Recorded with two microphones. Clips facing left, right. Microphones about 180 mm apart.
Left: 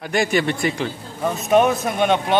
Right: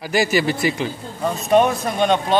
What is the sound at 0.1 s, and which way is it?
A man's voice, 5° right (ahead or behind).